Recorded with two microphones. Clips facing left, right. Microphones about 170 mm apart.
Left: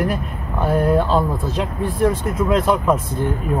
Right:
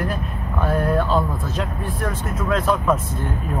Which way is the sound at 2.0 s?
20° left (ahead or behind).